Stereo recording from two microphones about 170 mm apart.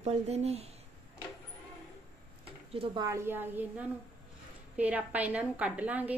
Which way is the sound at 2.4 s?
35° right (ahead or behind).